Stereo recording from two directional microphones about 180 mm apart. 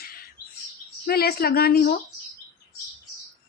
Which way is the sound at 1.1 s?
60° left (ahead or behind).